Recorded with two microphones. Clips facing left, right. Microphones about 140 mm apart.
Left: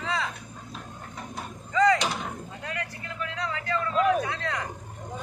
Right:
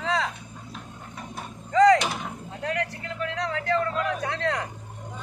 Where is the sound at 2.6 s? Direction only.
70° right (ahead or behind).